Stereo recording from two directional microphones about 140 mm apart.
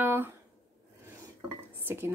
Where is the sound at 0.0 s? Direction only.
15° right (ahead or behind).